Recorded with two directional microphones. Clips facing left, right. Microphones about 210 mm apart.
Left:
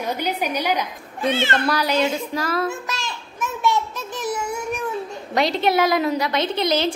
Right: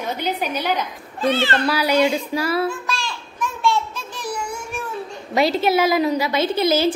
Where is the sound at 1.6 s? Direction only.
10° right (ahead or behind).